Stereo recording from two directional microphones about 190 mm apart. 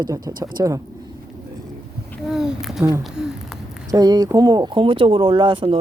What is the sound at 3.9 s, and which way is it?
Speech, 20° right (ahead or behind).